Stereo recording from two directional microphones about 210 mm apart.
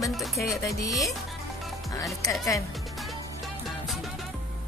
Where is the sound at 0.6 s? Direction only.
15° left (ahead or behind).